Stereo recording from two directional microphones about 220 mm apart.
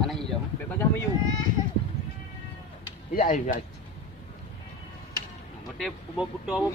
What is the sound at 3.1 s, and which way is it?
Speech, 35° left (ahead or behind).